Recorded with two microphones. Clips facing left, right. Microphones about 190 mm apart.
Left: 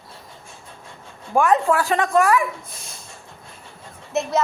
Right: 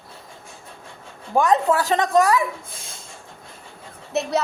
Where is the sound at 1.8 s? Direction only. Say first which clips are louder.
Right 1 dB; 20° right (ahead or behind).